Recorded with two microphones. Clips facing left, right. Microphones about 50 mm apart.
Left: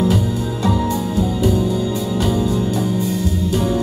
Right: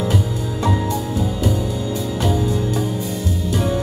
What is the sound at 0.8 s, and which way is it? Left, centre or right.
Music, left.